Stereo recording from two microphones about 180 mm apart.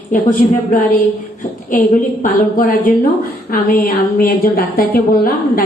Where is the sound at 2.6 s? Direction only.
50° left (ahead or behind).